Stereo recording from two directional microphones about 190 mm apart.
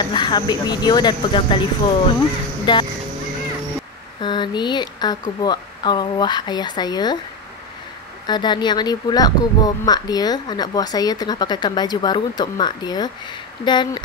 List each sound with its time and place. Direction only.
0.0 s speech: 25° left (ahead or behind)
4.2 s speech: 25° left (ahead or behind)
8.3 s speech: 25° left (ahead or behind)